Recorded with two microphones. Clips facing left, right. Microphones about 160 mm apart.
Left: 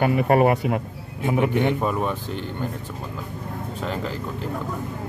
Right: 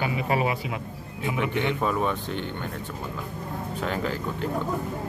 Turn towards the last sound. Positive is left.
turn(degrees=0)  # may be behind; listen again after turning